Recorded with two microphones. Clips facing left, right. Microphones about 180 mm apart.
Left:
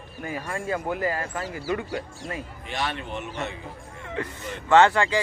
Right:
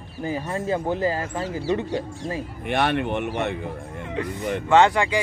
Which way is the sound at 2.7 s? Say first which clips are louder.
Right 9 dB; 60° right (ahead or behind).